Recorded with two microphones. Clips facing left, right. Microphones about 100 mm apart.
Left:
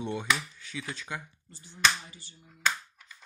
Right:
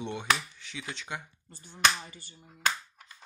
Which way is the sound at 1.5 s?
50° right (ahead or behind).